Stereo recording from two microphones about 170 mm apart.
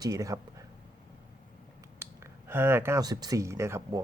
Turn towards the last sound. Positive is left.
turn(degrees=-15)  # may be behind; listen again after turning